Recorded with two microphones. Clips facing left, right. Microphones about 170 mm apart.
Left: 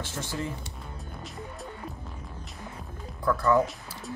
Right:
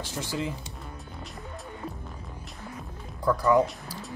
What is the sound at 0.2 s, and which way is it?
Speech, 10° right (ahead or behind).